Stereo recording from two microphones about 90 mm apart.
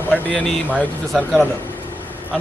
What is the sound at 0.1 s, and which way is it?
Speech, 15° left (ahead or behind).